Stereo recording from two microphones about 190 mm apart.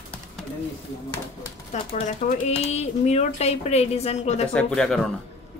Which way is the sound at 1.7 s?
35° left (ahead or behind).